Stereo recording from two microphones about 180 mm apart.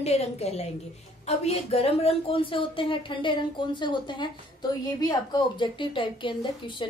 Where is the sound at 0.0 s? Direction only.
35° left (ahead or behind).